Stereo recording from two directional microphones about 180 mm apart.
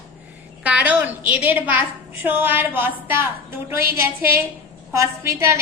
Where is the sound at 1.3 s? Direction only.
10° right (ahead or behind).